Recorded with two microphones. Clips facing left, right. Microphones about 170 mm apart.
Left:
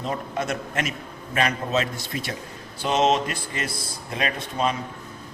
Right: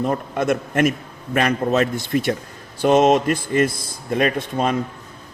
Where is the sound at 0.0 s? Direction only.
55° right (ahead or behind).